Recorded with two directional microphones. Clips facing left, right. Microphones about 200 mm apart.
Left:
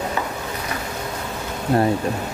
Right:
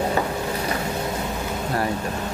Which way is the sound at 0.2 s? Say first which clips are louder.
Right 3 dB; 40° right (ahead or behind).